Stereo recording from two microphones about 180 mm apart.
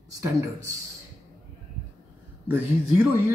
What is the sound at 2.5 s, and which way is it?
Speech, 10° right (ahead or behind).